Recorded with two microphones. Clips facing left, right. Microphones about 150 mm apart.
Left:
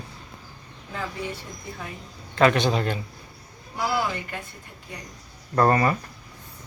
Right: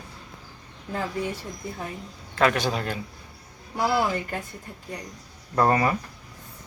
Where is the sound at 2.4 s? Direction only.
5° right (ahead or behind).